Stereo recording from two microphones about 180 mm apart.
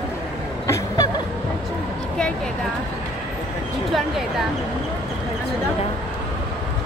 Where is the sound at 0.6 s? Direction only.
20° left (ahead or behind).